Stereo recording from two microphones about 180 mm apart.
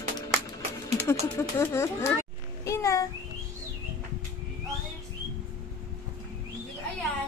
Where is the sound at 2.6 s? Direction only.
15° left (ahead or behind).